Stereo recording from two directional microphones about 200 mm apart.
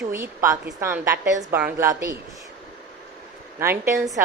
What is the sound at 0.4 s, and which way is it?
A woman's voice, 15° right (ahead or behind).